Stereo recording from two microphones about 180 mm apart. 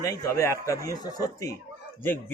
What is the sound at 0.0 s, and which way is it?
A man's voice, 20° left (ahead or behind).